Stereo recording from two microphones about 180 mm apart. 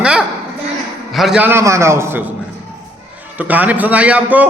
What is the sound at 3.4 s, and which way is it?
A man's voice, 10° right (ahead or behind).